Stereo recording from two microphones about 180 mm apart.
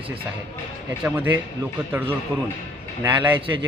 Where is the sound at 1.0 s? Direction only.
10° right (ahead or behind).